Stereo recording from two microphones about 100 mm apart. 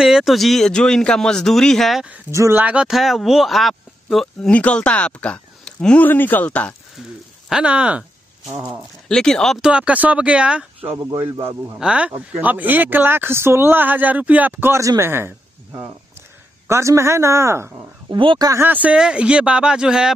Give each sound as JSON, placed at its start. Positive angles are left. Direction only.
{"t": 0.0, "sound": "speech", "side_deg": -5}
{"t": 2.5, "sound": "speech", "side_deg": -15}
{"t": 4.5, "sound": "speech", "side_deg": 15}
{"t": 7.0, "sound": "speech", "side_deg": -5}
{"t": 9.1, "sound": "speech", "side_deg": 5}
{"t": 9.6, "sound": "speech", "side_deg": -10}
{"t": 11.0, "sound": "speech", "side_deg": -25}
{"t": 11.8, "sound": "speech", "side_deg": -10}
{"t": 18.1, "sound": "speech", "side_deg": -55}
{"t": 18.5, "sound": "speech", "side_deg": -20}